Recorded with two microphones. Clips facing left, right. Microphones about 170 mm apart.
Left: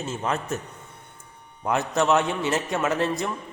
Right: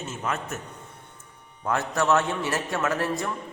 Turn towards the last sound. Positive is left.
turn(degrees=20)  # may be behind; listen again after turning